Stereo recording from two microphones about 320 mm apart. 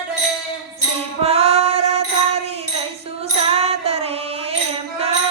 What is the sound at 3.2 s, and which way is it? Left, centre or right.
Music, centre.